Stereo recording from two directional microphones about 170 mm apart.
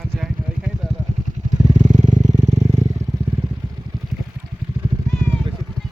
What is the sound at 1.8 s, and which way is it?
Vehicle, 45° right (ahead or behind).